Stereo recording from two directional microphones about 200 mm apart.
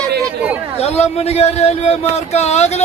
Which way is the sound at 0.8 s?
30° left (ahead or behind).